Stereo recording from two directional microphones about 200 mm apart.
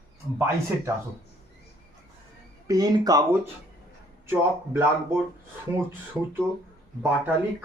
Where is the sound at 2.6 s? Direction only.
20° right (ahead or behind).